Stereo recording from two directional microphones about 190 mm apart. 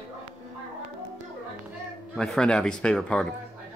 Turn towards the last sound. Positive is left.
turn(degrees=5)  # may be behind; listen again after turning